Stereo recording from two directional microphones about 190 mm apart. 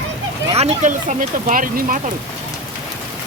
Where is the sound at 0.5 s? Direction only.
35° right (ahead or behind).